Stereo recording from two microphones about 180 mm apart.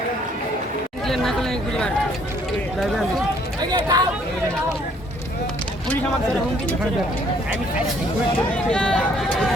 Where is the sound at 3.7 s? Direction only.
25° right (ahead or behind).